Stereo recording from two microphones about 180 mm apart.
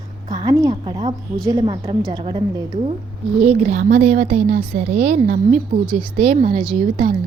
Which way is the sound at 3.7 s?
65° right (ahead or behind).